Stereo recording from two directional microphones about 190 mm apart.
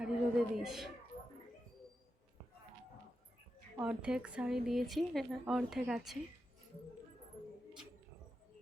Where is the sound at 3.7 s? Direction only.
5° right (ahead or behind).